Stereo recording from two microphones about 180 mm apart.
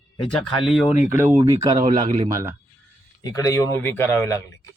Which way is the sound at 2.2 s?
20° right (ahead or behind).